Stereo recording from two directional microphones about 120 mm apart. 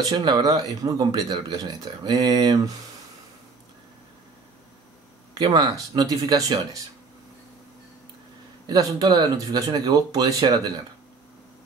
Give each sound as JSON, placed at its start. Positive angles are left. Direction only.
{"t": 0.1, "sound": "speech", "side_deg": -40}
{"t": 5.3, "sound": "speech", "side_deg": -35}
{"t": 8.6, "sound": "speech", "side_deg": -30}